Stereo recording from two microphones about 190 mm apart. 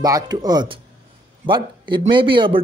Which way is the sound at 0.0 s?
20° right (ahead or behind).